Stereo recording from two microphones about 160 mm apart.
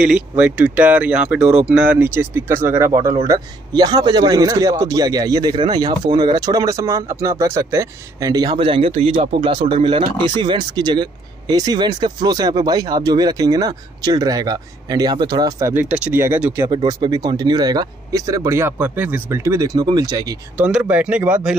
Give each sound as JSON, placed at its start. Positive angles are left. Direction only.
{"t": 0.0, "sound": "speech", "side_deg": -5}
{"t": 15.7, "sound": "speech", "side_deg": -10}
{"t": 16.6, "sound": "speech", "side_deg": -25}
{"t": 20.5, "sound": "speech", "side_deg": -10}